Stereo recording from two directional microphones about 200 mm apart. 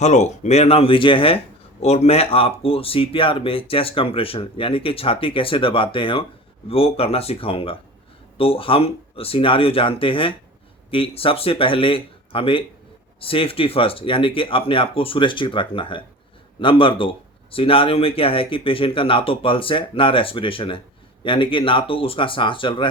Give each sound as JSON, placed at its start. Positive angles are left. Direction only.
{"t": 0.0, "sound": "speech", "side_deg": 35}